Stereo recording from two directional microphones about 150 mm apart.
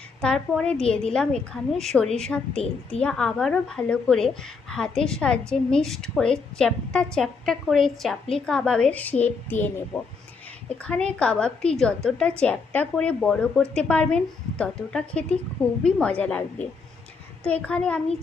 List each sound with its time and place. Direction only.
0.2 s a woman's voice: 5° left (ahead or behind)